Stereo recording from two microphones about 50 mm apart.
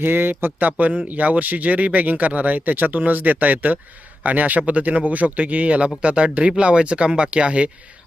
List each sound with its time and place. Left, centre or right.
0.0 s speech: right
0.6 s speech: right